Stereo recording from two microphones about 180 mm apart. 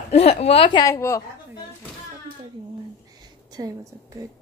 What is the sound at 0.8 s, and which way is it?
Speech, 15° left (ahead or behind).